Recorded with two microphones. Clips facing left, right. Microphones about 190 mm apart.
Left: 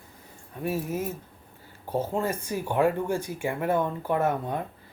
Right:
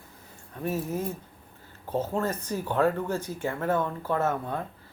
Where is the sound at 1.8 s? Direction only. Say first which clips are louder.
Left 1 dB; 10° left (ahead or behind).